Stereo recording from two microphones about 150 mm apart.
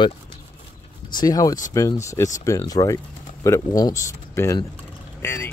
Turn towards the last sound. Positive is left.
turn(degrees=15)  # may be behind; listen again after turning